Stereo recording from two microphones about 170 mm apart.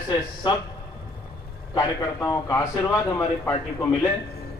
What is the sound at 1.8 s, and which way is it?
A man's voice, 20° left (ahead or behind).